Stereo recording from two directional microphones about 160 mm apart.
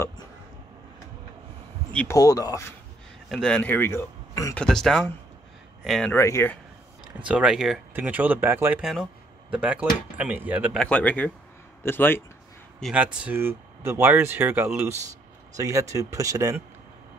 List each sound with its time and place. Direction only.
1.9 s speech: 10° left (ahead or behind)
2.1 s speech: 20° left (ahead or behind)
3.3 s speech: 5° left (ahead or behind)
4.6 s speech: 5° left (ahead or behind)
6.1 s speech: 15° left (ahead or behind)
7.2 s speech: 5° right (ahead or behind)
10.8 s speech: 10° left (ahead or behind)
12.9 s speech: 10° right (ahead or behind)